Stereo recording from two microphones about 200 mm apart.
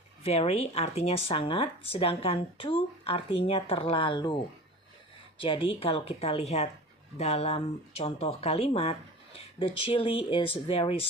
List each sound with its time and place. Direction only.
0.2 s speech: 30° left (ahead or behind)
5.4 s speech: 25° left (ahead or behind)